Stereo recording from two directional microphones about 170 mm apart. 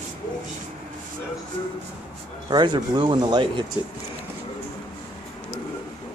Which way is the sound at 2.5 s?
25° right (ahead or behind).